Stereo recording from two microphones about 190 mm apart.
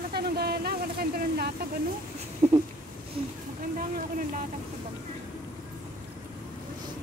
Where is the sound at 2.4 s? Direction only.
35° right (ahead or behind).